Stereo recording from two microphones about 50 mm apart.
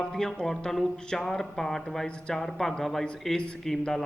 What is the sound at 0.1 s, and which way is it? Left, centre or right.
A man's voice, centre.